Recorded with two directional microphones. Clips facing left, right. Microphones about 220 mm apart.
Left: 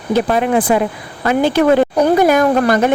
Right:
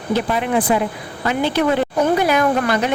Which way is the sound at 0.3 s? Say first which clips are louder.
Left 4 dB; 55° left (ahead or behind).